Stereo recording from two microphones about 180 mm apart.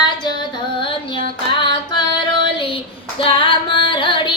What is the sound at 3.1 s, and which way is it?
Female singing, 30° left (ahead or behind).